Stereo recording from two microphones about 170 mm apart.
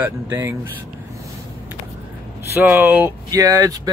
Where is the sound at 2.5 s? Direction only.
10° right (ahead or behind).